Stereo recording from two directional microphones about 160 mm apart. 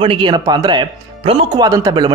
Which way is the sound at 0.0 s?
30° right (ahead or behind).